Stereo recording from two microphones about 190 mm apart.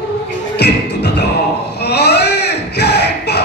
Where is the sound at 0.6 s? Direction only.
60° left (ahead or behind).